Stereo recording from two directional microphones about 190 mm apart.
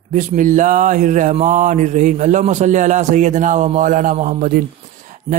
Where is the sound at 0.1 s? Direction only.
40° right (ahead or behind).